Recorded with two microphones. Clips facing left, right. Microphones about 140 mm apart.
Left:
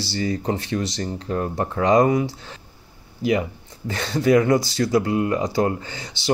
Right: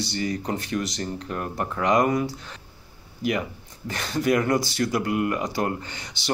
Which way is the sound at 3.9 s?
30° left (ahead or behind).